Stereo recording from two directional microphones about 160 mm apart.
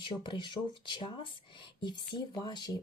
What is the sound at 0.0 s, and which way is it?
Speech, 30° left (ahead or behind).